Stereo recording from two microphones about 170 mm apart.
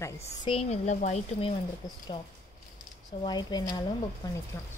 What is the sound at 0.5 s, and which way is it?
Speech, 40° left (ahead or behind).